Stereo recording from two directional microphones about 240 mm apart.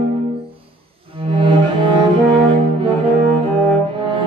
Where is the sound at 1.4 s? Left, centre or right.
Right.